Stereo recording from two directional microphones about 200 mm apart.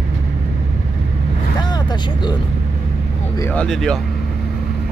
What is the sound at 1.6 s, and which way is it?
Vehicle, 20° left (ahead or behind).